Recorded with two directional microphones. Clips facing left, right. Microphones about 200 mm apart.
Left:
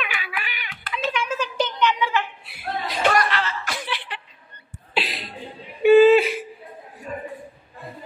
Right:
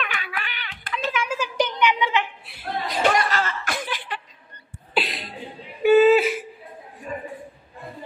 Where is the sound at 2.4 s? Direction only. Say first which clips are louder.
Even; centre (ahead or behind).